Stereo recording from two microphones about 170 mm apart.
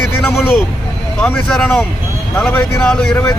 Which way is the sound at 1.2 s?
5° left (ahead or behind).